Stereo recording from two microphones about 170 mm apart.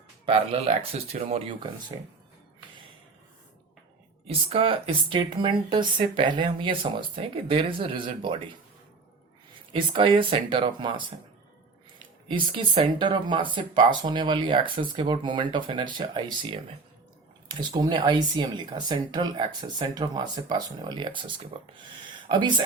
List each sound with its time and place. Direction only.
0.3 s speech: 40° right (ahead or behind)
4.3 s speech: 35° right (ahead or behind)
9.7 s speech: 30° right (ahead or behind)
12.5 s speech: 30° right (ahead or behind)